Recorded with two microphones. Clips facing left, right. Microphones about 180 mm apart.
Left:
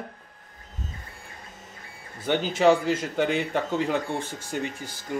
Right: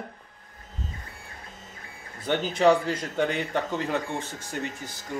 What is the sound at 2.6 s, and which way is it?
Speech, 5° left (ahead or behind).